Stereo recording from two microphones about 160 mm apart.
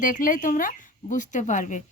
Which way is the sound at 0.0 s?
55° left (ahead or behind).